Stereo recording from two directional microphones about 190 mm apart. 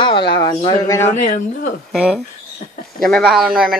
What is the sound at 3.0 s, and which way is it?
Speech, centre (ahead or behind).